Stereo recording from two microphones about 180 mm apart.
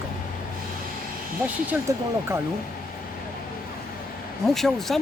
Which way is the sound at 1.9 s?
15° right (ahead or behind).